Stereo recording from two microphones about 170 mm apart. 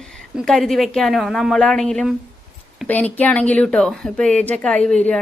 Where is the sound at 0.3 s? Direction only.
Centre (ahead or behind).